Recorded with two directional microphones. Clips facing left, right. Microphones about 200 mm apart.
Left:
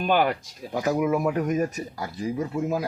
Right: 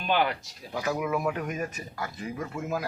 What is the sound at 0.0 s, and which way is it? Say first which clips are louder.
Speech: left 4 dB; 45° left (ahead or behind).